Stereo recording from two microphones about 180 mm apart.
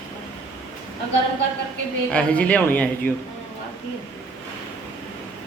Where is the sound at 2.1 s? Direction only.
5° left (ahead or behind).